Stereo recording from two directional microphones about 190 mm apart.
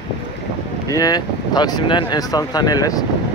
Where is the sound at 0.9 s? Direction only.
20° left (ahead or behind).